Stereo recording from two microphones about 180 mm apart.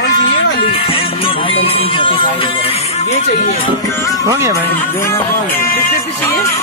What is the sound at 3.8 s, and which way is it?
Speech, 20° left (ahead or behind).